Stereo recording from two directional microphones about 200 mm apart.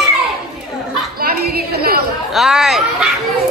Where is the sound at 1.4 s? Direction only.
50° right (ahead or behind).